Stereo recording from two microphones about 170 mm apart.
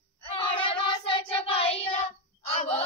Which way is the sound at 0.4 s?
30° left (ahead or behind).